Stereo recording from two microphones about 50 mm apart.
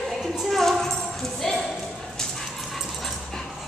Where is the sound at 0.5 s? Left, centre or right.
Centre.